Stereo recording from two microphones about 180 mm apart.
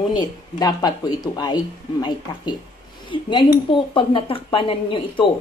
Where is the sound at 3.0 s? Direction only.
25° left (ahead or behind).